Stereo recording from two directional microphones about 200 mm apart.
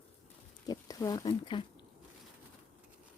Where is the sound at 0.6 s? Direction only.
15° left (ahead or behind).